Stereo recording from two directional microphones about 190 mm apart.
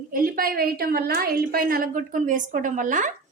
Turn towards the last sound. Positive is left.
turn(degrees=-45)  # may be behind; listen again after turning